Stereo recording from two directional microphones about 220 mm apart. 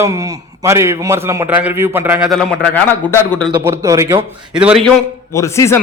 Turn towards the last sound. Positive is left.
turn(degrees=10)  # may be behind; listen again after turning